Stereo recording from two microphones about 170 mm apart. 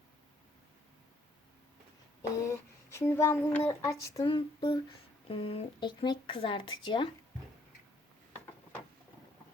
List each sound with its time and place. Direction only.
2.4 s speech: 15° left (ahead or behind)